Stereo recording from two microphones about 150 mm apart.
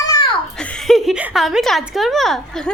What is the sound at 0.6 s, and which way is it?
A woman's voice, 5° left (ahead or behind).